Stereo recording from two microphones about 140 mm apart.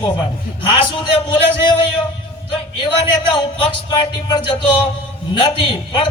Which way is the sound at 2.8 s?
35° left (ahead or behind).